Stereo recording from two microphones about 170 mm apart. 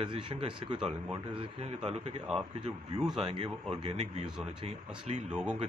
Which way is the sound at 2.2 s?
5° right (ahead or behind).